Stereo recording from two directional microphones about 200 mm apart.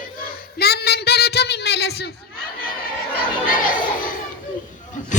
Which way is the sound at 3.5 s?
45° left (ahead or behind).